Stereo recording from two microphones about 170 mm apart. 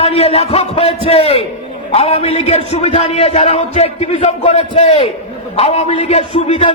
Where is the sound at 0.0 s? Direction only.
35° left (ahead or behind).